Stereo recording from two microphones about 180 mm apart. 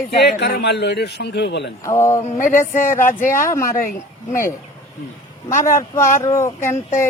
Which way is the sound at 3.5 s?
15° left (ahead or behind).